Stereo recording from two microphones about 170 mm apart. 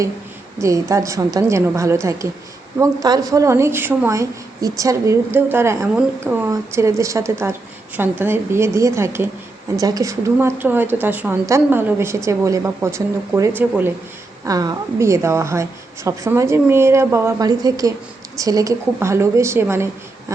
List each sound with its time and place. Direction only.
0.6 s speech: 20° right (ahead or behind)